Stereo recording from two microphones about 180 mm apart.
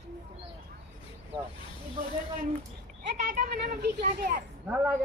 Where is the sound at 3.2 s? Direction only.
50° right (ahead or behind).